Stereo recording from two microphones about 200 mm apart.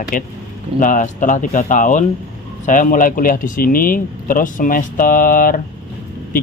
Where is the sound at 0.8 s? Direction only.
40° left (ahead or behind).